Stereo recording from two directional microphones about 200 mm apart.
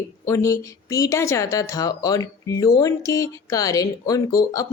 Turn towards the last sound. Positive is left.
turn(degrees=15)  # may be behind; listen again after turning